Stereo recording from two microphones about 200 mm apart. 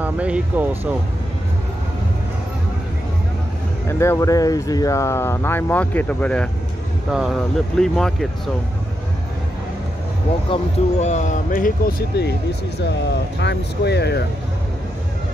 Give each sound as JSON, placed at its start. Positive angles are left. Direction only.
{"t": 0.0, "sound": "speech", "side_deg": -5}
{"t": 3.8, "sound": "speech", "side_deg": 15}
{"t": 10.5, "sound": "speech", "side_deg": 35}
{"t": 13.4, "sound": "speech", "side_deg": 60}